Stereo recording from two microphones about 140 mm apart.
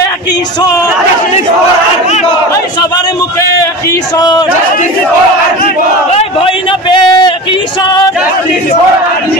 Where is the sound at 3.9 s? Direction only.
30° left (ahead or behind).